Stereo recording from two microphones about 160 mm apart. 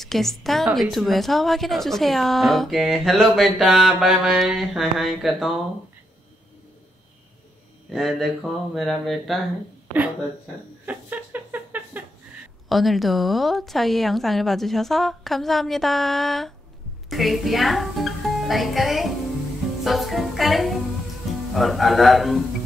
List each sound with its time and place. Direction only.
0.0 s a woman's voice: centre (ahead or behind)
7.9 s a woman's voice: centre (ahead or behind)
10.9 s a sound: 10° right (ahead or behind)
12.6 s a woman's voice: centre (ahead or behind)